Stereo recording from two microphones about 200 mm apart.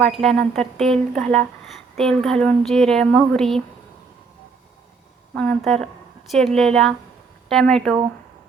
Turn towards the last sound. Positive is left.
turn(degrees=5)  # may be behind; listen again after turning